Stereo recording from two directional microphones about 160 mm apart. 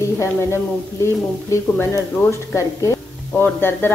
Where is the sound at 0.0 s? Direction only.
15° left (ahead or behind).